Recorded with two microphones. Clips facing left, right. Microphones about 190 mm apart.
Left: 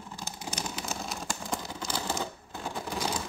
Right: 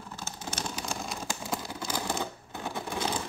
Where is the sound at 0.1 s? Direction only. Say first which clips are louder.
Even; 15° left (ahead or behind); by 2.1 s 15° right (ahead or behind).